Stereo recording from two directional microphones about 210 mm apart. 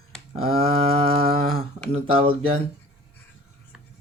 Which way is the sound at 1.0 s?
25° right (ahead or behind).